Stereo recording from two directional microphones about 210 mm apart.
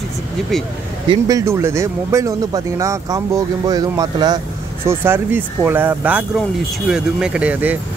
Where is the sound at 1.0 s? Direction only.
15° right (ahead or behind).